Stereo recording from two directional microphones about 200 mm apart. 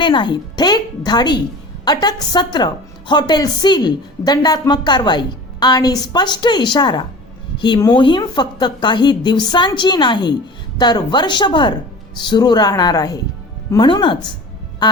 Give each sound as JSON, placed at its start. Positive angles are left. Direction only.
{"t": 0.0, "sound": "a woman's voice", "side_deg": 25}